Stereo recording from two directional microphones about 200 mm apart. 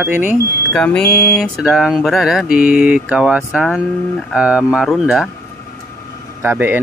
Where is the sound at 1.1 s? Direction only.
50° left (ahead or behind).